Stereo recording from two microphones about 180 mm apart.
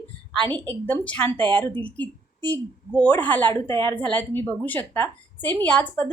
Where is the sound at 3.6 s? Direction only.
25° right (ahead or behind).